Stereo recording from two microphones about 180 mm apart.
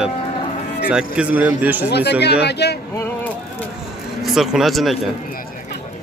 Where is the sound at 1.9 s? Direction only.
65° left (ahead or behind).